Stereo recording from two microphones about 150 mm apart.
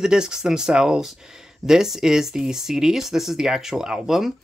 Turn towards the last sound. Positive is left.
turn(degrees=-5)  # may be behind; listen again after turning